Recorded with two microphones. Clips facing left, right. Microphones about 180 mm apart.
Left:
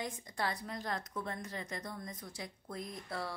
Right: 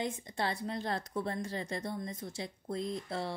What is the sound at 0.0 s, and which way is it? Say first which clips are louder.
A woman's voice: right 3 dB; 25° right (ahead or behind).